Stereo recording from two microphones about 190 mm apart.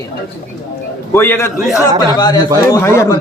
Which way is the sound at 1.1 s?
10° left (ahead or behind).